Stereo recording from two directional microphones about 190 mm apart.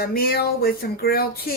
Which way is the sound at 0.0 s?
55° left (ahead or behind).